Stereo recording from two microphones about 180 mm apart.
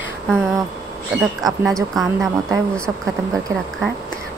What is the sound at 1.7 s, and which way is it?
Speech, centre (ahead or behind).